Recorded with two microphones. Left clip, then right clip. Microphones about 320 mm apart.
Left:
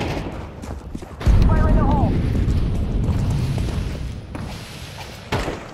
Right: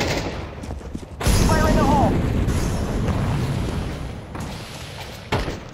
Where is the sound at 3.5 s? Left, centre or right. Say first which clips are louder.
Right 1 dB; centre.